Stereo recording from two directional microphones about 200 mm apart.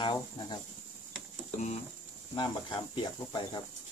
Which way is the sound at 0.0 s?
20° left (ahead or behind).